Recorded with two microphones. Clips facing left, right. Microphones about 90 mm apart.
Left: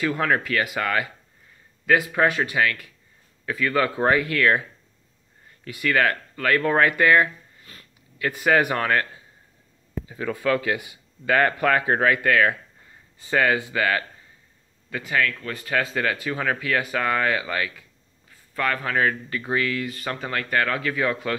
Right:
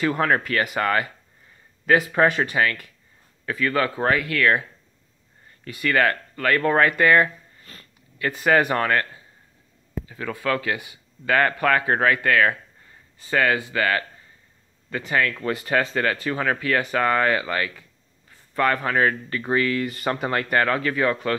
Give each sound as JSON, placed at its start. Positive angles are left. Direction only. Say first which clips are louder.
{"t": 0.2, "sound": "speech", "louder": "right 1 dB", "side_deg": -10}
{"t": 1.9, "sound": "speech", "louder": "right 2 dB", "side_deg": 0}
{"t": 3.9, "sound": "speech", "louder": "left 1 dB", "side_deg": 20}
{"t": 5.7, "sound": "speech", "louder": "right 1 dB", "side_deg": 5}
{"t": 10.0, "sound": "speech", "louder": "left 2 dB", "side_deg": 10}
{"t": 15.5, "sound": "speech", "louder": "right 5 dB", "side_deg": -10}
{"t": 15.8, "sound": "speech", "louder": "right 2 dB", "side_deg": 5}
{"t": 20.1, "sound": "speech", "louder": "right 5 dB", "side_deg": -20}
{"t": 20.7, "sound": "speech", "louder": "right 2 dB", "side_deg": 0}